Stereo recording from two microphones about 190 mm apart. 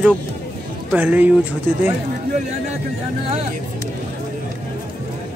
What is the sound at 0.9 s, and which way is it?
Speech, 10° right (ahead or behind).